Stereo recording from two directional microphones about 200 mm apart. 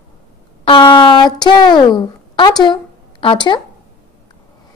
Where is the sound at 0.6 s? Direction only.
25° left (ahead or behind).